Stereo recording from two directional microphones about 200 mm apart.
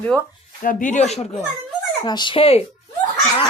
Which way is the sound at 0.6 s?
40° left (ahead or behind).